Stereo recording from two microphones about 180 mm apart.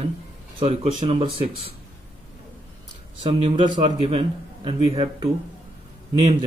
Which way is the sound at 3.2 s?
35° right (ahead or behind).